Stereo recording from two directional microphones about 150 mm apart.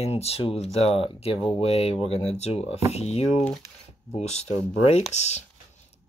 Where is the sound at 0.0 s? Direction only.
45° left (ahead or behind).